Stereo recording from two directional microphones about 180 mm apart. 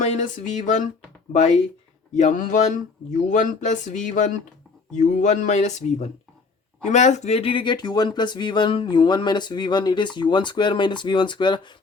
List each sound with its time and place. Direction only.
0.0 s speech: 45° left (ahead or behind); by 11.8 s 25° left (ahead or behind)